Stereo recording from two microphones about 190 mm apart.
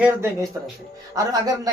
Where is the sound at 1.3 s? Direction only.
20° right (ahead or behind).